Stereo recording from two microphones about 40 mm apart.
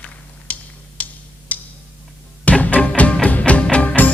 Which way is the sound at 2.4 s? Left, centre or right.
Left.